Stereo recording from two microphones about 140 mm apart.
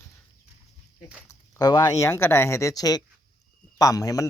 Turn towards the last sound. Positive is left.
turn(degrees=25)  # may be behind; listen again after turning